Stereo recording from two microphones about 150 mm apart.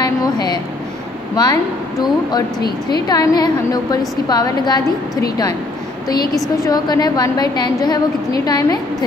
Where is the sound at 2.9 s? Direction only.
25° left (ahead or behind).